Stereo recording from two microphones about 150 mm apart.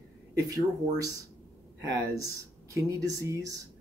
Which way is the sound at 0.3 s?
20° right (ahead or behind).